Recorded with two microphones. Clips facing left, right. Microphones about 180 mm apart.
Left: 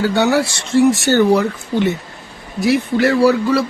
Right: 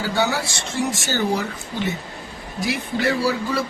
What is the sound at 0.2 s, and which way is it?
Speech, 65° left (ahead or behind).